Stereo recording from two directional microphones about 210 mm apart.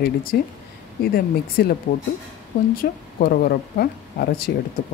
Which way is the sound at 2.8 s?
45° left (ahead or behind).